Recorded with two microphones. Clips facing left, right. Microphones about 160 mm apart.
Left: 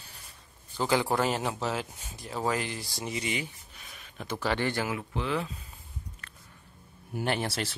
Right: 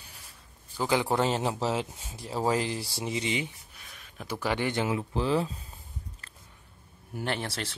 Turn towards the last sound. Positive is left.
turn(degrees=5)  # may be behind; listen again after turning